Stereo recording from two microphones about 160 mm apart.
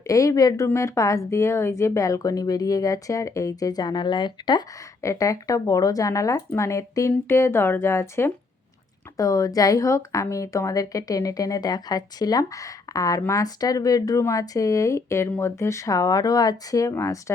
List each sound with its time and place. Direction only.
0.1 s speech: 20° left (ahead or behind)